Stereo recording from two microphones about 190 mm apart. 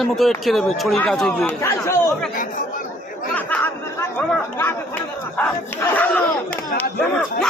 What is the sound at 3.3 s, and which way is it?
Chatter, 10° left (ahead or behind).